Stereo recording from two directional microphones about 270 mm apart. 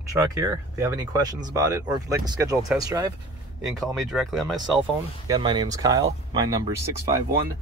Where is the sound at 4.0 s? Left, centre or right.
Centre.